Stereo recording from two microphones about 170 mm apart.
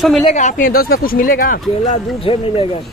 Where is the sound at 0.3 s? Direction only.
45° left (ahead or behind).